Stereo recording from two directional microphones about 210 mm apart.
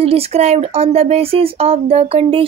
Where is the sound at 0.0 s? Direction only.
30° right (ahead or behind).